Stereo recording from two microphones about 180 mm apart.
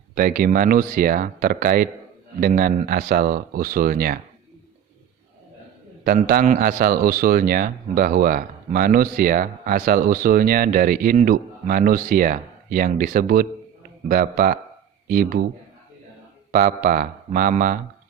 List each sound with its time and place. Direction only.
0.1 s speech: 50° right (ahead or behind)
6.2 s speech: 50° right (ahead or behind)
16.5 s speech: 50° right (ahead or behind)